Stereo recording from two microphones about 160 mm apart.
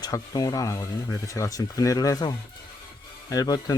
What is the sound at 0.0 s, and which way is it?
Speech, 25° left (ahead or behind).